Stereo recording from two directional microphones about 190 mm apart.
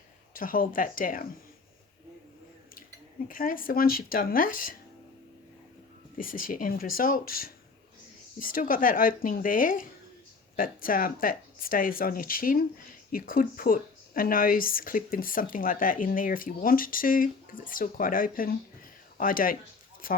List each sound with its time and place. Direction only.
0.3 s speech: 45° left (ahead or behind)
3.2 s speech: 45° left (ahead or behind)
6.1 s speech: 45° left (ahead or behind)